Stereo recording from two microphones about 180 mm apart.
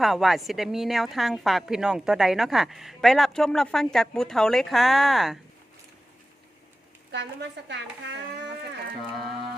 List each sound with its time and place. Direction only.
0.0 s a woman's voice: centre (ahead or behind)
7.1 s a woman's voice: 75° right (ahead or behind)